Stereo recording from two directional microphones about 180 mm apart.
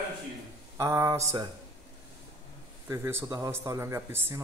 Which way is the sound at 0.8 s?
15° right (ahead or behind).